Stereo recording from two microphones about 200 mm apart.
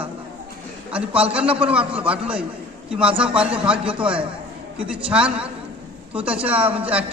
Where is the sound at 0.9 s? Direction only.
5° right (ahead or behind).